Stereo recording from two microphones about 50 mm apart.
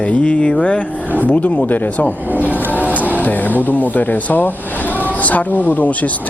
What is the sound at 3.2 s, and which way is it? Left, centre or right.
Speech, left.